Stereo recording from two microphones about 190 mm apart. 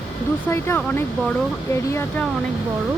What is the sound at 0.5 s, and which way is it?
Speech, 10° left (ahead or behind).